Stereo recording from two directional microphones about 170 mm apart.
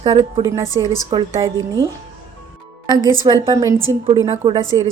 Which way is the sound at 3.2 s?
25° right (ahead or behind).